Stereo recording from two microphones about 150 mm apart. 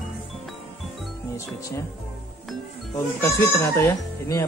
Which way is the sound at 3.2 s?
20° left (ahead or behind).